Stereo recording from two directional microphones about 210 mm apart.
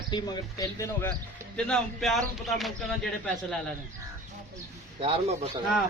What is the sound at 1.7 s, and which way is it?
A man's voice, centre (ahead or behind).